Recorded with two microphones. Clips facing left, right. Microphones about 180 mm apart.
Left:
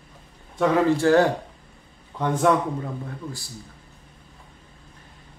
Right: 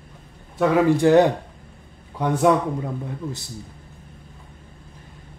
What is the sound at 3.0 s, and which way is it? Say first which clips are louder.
Speech: right 4 dB; 20° right (ahead or behind).